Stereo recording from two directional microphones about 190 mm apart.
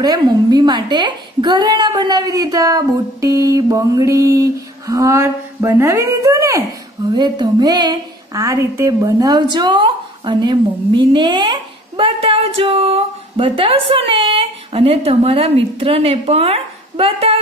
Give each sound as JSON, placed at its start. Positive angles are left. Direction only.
{"t": 0.0, "sound": "a woman's voice", "side_deg": -20}